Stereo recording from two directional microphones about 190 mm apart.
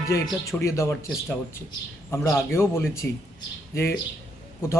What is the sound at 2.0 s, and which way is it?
A man's voice, 15° left (ahead or behind).